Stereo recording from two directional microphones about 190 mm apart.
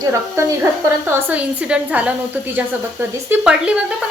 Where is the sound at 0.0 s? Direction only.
15° right (ahead or behind).